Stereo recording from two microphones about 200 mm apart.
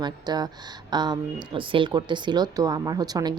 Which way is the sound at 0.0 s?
20° right (ahead or behind).